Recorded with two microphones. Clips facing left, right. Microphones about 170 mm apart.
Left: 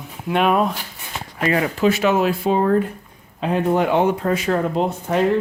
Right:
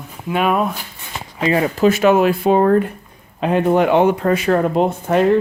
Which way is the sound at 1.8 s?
50° right (ahead or behind).